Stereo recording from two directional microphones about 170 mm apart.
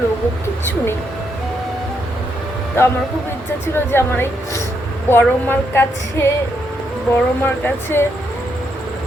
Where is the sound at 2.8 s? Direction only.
15° left (ahead or behind).